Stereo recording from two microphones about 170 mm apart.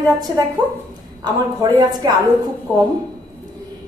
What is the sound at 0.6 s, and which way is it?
A woman's voice, 25° right (ahead or behind).